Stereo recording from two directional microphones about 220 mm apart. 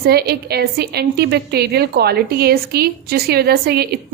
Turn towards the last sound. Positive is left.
turn(degrees=-45)  # may be behind; listen again after turning